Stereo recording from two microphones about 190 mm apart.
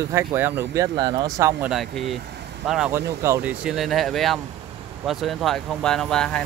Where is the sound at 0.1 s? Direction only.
10° right (ahead or behind).